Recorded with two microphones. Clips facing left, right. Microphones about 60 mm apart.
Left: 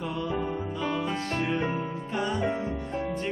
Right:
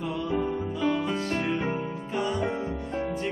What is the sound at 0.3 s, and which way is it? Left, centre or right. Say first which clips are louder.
Music: right 2 dB; centre.